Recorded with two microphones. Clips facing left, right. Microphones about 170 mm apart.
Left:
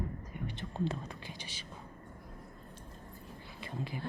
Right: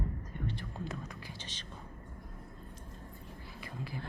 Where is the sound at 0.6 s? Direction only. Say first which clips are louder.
Left 5 dB; 30° left (ahead or behind).